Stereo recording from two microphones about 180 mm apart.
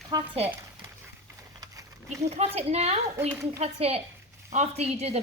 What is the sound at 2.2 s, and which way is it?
Speech, 35° right (ahead or behind).